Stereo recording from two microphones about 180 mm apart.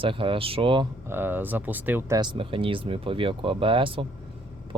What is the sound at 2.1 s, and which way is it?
Speech, 25° right (ahead or behind).